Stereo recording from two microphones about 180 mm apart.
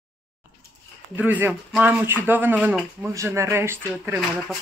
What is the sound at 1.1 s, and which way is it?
Speech, 10° right (ahead or behind).